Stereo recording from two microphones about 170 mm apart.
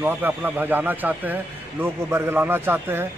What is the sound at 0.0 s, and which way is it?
Speech, 10° right (ahead or behind).